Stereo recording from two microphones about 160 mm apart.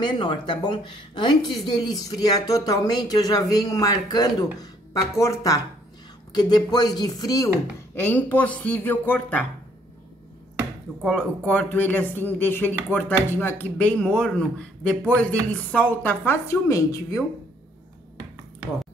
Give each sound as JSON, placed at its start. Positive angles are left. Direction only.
{"t": 0.0, "sound": "speech", "side_deg": 30}
{"t": 11.0, "sound": "speech", "side_deg": 5}